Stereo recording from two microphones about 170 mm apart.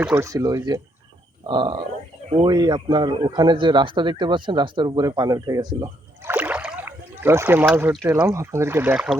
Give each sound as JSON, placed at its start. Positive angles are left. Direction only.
{"t": 0.0, "sound": "speech", "side_deg": -10}
{"t": 0.3, "sound": "a man's voice", "side_deg": -20}
{"t": 6.3, "sound": "rowboat", "side_deg": -10}
{"t": 8.3, "sound": "speech", "side_deg": -15}